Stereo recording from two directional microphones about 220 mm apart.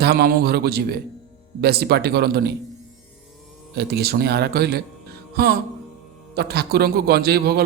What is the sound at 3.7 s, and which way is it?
A man's voice, 45° right (ahead or behind).